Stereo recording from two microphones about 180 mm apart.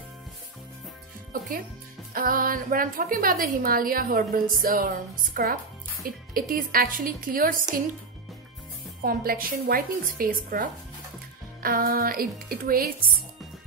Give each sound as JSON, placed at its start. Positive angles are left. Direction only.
{"t": 2.1, "sound": "a woman's voice", "side_deg": -50}
{"t": 9.0, "sound": "a woman's voice", "side_deg": -55}